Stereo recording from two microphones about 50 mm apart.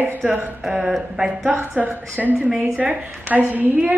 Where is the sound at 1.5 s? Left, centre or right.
Right.